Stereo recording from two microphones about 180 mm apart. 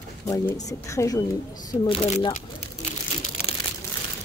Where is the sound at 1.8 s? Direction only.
35° left (ahead or behind).